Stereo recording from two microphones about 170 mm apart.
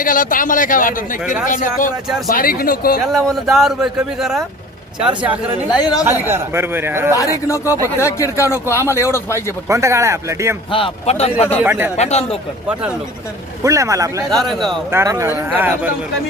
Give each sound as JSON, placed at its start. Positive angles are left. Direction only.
{"t": 0.0, "sound": "speech", "side_deg": 55}
{"t": 3.1, "sound": "speech", "side_deg": 0}
{"t": 5.6, "sound": "speech", "side_deg": 25}
{"t": 6.1, "sound": "speech", "side_deg": -15}
{"t": 7.1, "sound": "speech", "side_deg": 20}
{"t": 9.6, "sound": "speech", "side_deg": -15}
{"t": 10.7, "sound": "a man's voice", "side_deg": 30}
{"t": 11.6, "sound": "speech", "side_deg": -10}
{"t": 11.9, "sound": "a man's voice", "side_deg": 40}
{"t": 13.6, "sound": "speech", "side_deg": -20}
{"t": 14.3, "sound": "speech", "side_deg": 0}
{"t": 14.9, "sound": "speech", "side_deg": -20}